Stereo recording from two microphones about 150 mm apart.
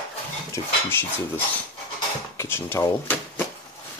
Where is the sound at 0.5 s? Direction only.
15° left (ahead or behind).